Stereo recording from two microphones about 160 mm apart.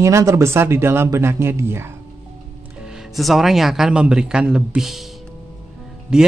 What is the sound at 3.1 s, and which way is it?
A man's voice, centre (ahead or behind).